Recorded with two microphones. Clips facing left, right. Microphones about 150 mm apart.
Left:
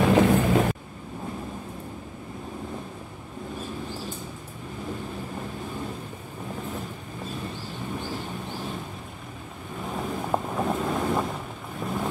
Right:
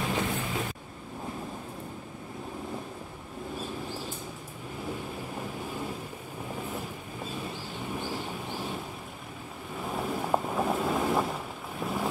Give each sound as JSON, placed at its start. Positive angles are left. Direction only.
{"t": 0.0, "sound": "vehicle", "side_deg": 75}
{"t": 9.9, "sound": "boat", "side_deg": -5}
{"t": 11.8, "sound": "vehicle", "side_deg": -5}